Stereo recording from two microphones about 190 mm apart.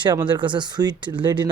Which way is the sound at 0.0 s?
25° right (ahead or behind).